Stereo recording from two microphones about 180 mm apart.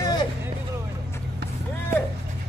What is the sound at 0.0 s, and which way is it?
Vehicle, 25° left (ahead or behind).